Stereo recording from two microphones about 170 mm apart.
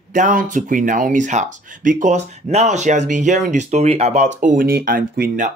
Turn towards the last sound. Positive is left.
turn(degrees=-60)  # may be behind; listen again after turning